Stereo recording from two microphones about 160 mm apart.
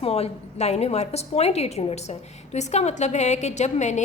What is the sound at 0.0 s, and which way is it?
A woman's voice, 40° left (ahead or behind).